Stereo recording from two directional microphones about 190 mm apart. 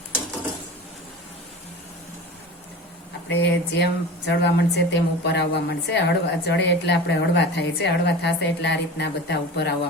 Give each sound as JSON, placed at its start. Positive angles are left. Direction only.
{"t": 3.2, "sound": "a woman's voice", "side_deg": 65}